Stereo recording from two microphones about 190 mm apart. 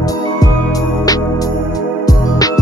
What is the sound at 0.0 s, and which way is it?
Music, 20° left (ahead or behind).